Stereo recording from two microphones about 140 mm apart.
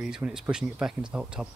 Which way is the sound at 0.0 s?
5° right (ahead or behind).